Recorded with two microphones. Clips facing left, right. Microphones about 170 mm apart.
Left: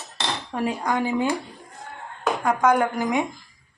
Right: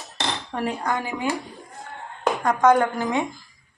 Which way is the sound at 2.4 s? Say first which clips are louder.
Right 2 dB; 10° left (ahead or behind).